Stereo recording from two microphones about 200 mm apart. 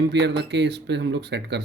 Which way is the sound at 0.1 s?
60° right (ahead or behind).